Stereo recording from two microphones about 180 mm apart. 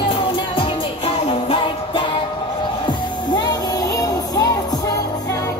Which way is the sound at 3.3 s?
20° left (ahead or behind).